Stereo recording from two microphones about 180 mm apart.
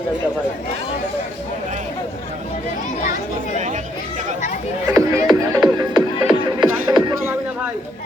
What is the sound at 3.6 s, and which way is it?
Chatter, 40° right (ahead or behind).